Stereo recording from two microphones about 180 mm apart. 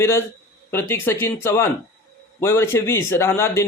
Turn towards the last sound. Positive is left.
turn(degrees=15)  # may be behind; listen again after turning